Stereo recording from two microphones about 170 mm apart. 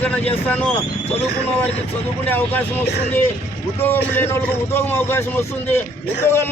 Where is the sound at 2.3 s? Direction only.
10° left (ahead or behind).